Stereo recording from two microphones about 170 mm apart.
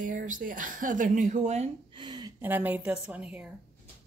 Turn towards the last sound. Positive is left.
turn(degrees=-5)  # may be behind; listen again after turning